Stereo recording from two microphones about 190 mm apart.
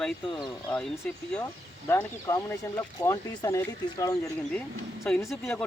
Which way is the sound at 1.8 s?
15° left (ahead or behind).